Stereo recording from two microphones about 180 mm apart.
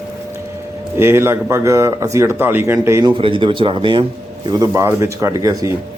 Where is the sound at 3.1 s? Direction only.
30° right (ahead or behind).